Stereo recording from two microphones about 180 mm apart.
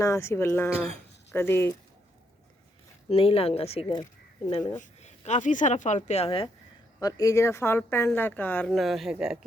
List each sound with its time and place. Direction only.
0.0 s speech: 15° left (ahead or behind)
3.1 s speech: 30° left (ahead or behind)
7.0 s speech: 20° left (ahead or behind); by 9.5 s 5° right (ahead or behind)